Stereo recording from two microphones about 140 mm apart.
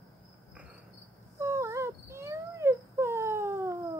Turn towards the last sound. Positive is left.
turn(degrees=-20)  # may be behind; listen again after turning